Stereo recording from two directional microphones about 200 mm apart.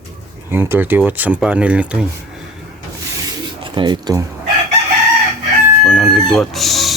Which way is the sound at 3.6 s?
25° right (ahead or behind).